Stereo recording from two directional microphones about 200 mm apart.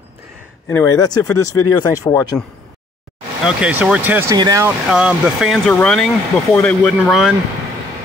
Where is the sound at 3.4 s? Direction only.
5° right (ahead or behind).